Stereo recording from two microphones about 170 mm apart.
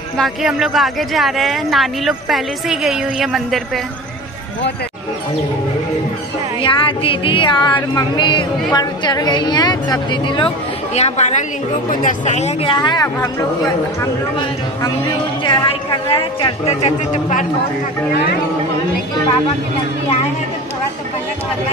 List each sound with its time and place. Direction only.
0.2 s speech: centre (ahead or behind)
6.6 s a woman's voice: 30° left (ahead or behind)
11.0 s speech: 40° left (ahead or behind)
12.6 s a woman's voice: 25° left (ahead or behind)
15.4 s speech: 25° left (ahead or behind); by 17.5 s 45° left (ahead or behind)